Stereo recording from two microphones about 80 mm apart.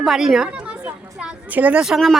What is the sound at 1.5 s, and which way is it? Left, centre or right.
Speech, centre.